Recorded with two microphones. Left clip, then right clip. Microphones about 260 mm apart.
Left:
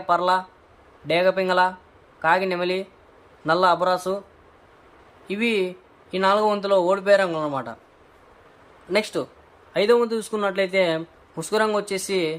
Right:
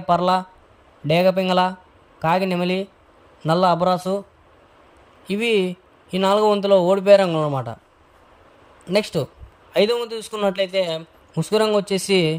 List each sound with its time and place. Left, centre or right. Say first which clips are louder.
0.0 s a man's voice: right 2 dB; right
5.2 s a man's voice: right 3 dB; right
8.9 s a man's voice: right 2 dB; right